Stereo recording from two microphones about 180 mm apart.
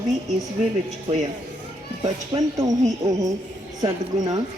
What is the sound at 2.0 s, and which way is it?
Speech, 20° right (ahead or behind).